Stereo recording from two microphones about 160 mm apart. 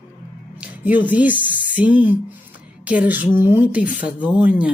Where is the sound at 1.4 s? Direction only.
55° left (ahead or behind).